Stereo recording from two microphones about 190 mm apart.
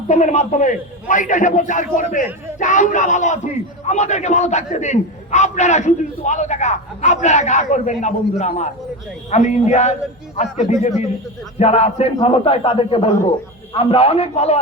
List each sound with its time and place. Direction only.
0.1 s a man's voice: 35° left (ahead or behind)